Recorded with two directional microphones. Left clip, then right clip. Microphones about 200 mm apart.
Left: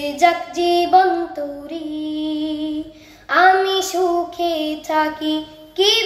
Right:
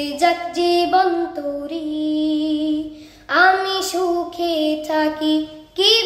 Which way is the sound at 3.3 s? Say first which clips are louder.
Left 1 dB; 20° right (ahead or behind).